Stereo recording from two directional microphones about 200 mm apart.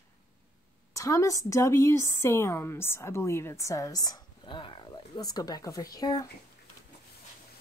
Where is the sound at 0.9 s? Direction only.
15° left (ahead or behind).